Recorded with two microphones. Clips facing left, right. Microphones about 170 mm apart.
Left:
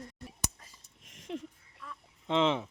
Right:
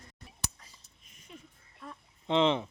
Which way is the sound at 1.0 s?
90° left.